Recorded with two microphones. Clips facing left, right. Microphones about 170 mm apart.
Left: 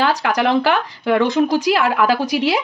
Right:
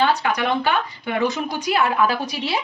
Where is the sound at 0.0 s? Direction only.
90° left.